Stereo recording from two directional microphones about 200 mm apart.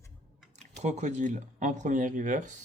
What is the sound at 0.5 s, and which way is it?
Speech, 35° right (ahead or behind).